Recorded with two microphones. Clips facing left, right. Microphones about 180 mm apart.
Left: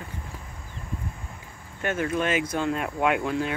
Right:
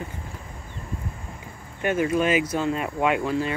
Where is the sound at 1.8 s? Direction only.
10° right (ahead or behind).